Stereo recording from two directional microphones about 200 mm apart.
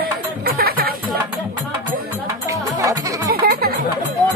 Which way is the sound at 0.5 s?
50° right (ahead or behind).